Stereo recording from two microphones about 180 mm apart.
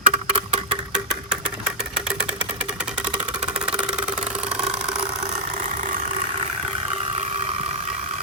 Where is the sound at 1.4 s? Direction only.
5° right (ahead or behind).